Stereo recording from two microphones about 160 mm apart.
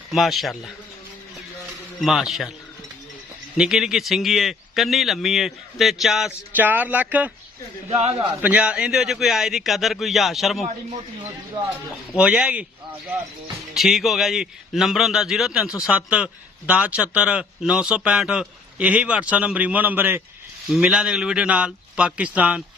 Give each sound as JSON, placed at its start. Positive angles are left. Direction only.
{"t": 0.1, "sound": "speech", "side_deg": 0}
{"t": 2.0, "sound": "speech", "side_deg": 0}
{"t": 3.6, "sound": "speech", "side_deg": -5}
{"t": 7.9, "sound": "a man's voice", "side_deg": -40}
{"t": 8.4, "sound": "speech", "side_deg": -10}
{"t": 12.1, "sound": "speech", "side_deg": -5}
{"t": 13.7, "sound": "speech", "side_deg": 0}